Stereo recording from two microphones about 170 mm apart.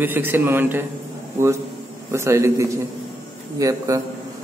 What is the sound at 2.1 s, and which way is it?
A man's voice, 15° right (ahead or behind).